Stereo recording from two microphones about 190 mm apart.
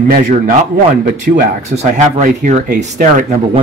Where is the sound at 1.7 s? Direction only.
35° right (ahead or behind).